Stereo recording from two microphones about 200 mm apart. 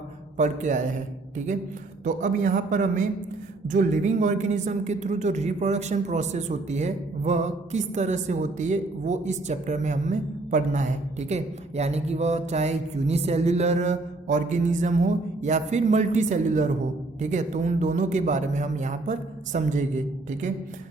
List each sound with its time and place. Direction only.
0.3 s speech: 40° right (ahead or behind)
2.0 s speech: 40° right (ahead or behind)